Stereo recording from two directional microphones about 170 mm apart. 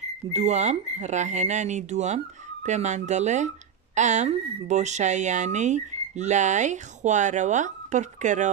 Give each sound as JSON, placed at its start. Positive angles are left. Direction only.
{"t": 0.3, "sound": "speech", "side_deg": -40}